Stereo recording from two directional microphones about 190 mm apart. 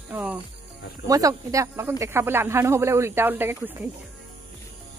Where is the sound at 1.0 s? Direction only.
20° right (ahead or behind).